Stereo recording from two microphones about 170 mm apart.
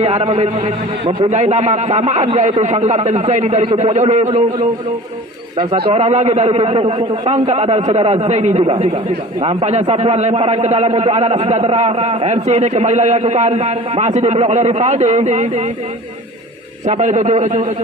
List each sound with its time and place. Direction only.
0.0 s a man's voice: 40° right (ahead or behind)
5.9 s a man's voice: 40° right (ahead or behind)
16.8 s a man's voice: 40° right (ahead or behind)